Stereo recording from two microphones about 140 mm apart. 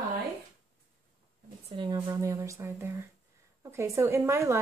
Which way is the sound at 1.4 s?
40° right (ahead or behind).